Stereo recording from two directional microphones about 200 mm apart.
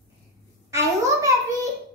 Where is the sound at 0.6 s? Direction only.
15° right (ahead or behind).